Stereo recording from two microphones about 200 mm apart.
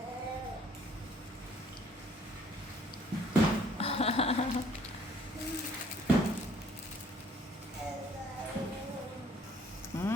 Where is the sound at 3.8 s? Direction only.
30° left (ahead or behind).